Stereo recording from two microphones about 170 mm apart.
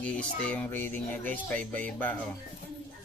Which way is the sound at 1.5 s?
50° right (ahead or behind).